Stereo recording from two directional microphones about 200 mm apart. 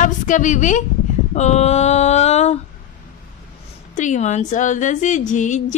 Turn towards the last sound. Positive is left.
turn(degrees=40)  # may be behind; listen again after turning